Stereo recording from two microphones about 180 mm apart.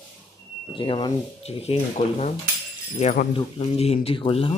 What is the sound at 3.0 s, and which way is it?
Speech, 40° left (ahead or behind).